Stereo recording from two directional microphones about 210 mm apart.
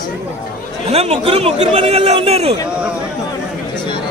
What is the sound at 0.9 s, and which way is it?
A man's voice, 30° right (ahead or behind).